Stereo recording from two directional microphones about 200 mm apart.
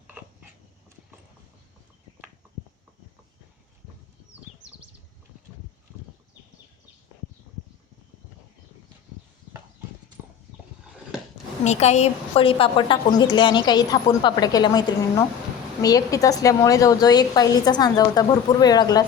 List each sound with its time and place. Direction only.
11.6 s a woman's voice: 35° left (ahead or behind); by 19.0 s 20° left (ahead or behind)